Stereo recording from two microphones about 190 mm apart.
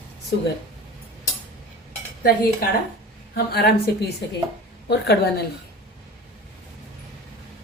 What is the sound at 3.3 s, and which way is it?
A woman's voice, 55° left (ahead or behind).